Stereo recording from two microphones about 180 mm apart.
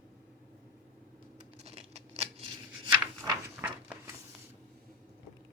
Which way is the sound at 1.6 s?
35° right (ahead or behind).